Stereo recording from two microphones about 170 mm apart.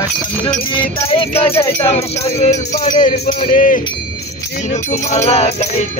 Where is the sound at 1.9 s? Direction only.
40° left (ahead or behind).